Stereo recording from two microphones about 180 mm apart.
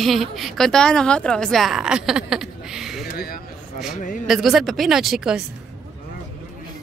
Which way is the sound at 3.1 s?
55° left (ahead or behind).